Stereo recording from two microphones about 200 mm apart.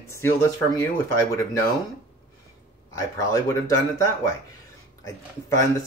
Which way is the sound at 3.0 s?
15° left (ahead or behind).